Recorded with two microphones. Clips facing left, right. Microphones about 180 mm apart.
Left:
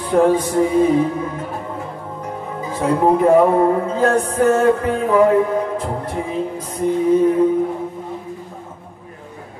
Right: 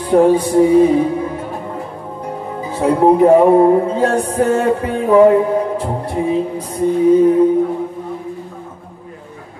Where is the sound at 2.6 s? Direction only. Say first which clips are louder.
Right 4 dB; 35° right (ahead or behind).